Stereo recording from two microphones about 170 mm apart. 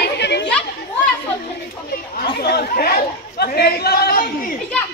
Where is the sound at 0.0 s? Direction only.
85° left.